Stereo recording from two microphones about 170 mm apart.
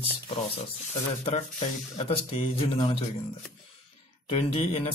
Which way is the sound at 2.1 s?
35° left (ahead or behind).